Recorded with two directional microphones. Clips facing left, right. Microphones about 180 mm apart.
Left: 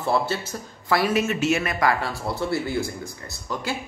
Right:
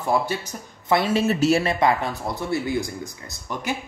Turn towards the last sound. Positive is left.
turn(degrees=-20)  # may be behind; listen again after turning